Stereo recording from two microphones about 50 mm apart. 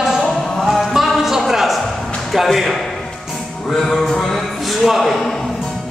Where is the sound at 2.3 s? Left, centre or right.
Centre.